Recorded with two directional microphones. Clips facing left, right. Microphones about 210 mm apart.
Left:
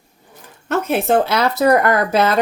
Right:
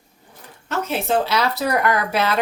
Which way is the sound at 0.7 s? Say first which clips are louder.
Left 5 dB; 55° left (ahead or behind).